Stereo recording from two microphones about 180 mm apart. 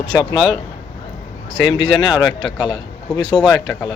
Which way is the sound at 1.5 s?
90° left.